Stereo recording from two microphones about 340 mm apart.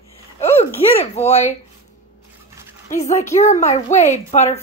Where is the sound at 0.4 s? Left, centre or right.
Centre.